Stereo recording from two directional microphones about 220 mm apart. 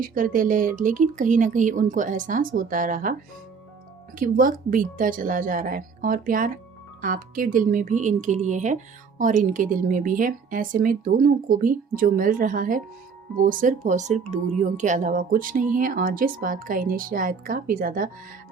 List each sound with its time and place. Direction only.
0.0 s a woman's voice: 40° right (ahead or behind)
4.2 s a woman's voice: 40° right (ahead or behind)